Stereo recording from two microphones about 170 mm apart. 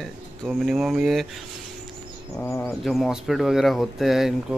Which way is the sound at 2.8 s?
Centre (ahead or behind).